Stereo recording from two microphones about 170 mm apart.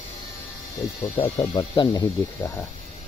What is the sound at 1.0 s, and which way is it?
Speech, 25° left (ahead or behind).